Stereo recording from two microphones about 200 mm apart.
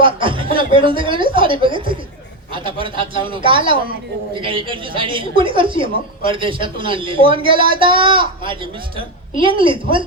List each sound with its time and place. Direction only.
0.0 s speech: 25° right (ahead or behind)